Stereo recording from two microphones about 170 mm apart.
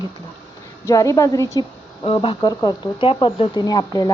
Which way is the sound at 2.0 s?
30° left (ahead or behind).